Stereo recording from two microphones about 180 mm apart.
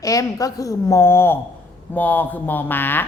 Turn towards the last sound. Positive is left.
turn(degrees=10)  # may be behind; listen again after turning